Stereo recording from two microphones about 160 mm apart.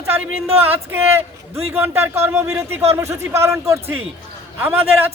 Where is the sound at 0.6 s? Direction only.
15° right (ahead or behind).